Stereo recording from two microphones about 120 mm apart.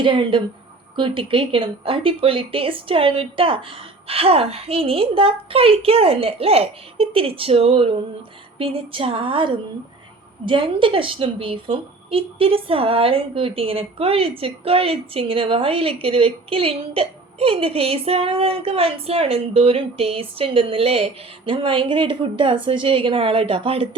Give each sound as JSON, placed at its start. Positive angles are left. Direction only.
{"t": 0.0, "sound": "a woman's voice", "side_deg": -45}